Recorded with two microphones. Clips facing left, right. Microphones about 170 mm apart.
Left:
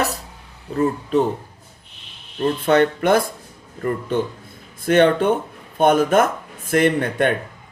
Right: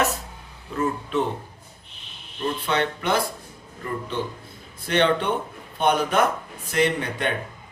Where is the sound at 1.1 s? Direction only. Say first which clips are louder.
Left 7 dB; 40° left (ahead or behind).